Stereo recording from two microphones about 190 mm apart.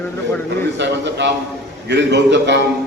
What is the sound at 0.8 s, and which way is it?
A man's voice, 65° right (ahead or behind).